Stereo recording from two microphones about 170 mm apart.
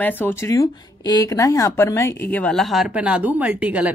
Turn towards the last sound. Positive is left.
turn(degrees=-10)  # may be behind; listen again after turning